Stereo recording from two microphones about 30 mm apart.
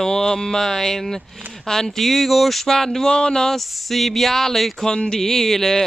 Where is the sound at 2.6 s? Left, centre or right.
Centre.